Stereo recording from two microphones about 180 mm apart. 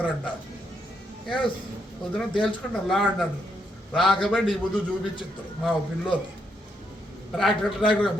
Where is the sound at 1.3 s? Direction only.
25° left (ahead or behind).